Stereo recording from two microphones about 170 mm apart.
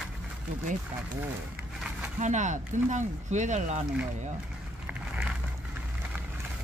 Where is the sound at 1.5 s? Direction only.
10° right (ahead or behind).